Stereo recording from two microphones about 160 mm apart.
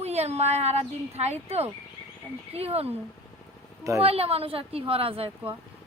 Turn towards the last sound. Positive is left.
turn(degrees=-35)  # may be behind; listen again after turning